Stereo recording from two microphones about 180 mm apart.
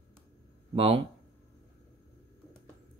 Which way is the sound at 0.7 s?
30° right (ahead or behind).